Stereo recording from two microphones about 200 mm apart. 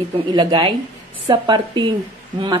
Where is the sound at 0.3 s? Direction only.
25° right (ahead or behind).